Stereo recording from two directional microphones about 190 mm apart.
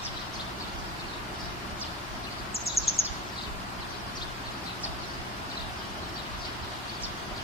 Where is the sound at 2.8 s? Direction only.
30° left (ahead or behind).